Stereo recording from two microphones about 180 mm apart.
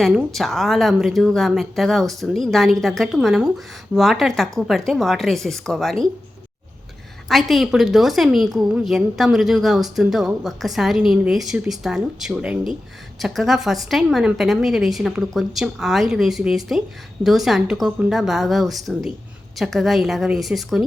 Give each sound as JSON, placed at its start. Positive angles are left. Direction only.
{"t": 0.0, "sound": "a woman's voice", "side_deg": -5}
{"t": 7.3, "sound": "a woman's voice", "side_deg": 0}